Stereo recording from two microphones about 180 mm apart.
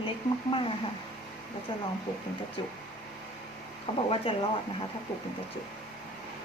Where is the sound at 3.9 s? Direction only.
30° left (ahead or behind).